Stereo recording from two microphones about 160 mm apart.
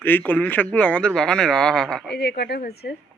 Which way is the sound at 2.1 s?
90° left.